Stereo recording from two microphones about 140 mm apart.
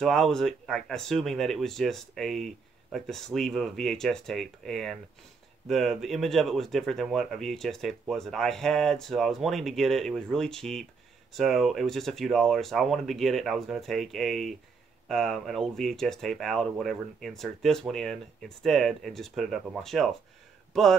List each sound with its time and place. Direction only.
0.0 s speech: centre (ahead or behind)